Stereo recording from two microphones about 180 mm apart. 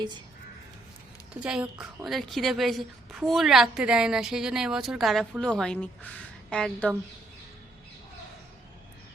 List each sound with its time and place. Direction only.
1.3 s a woman's voice: 5° right (ahead or behind)